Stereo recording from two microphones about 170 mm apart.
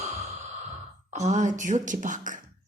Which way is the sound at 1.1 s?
40° right (ahead or behind).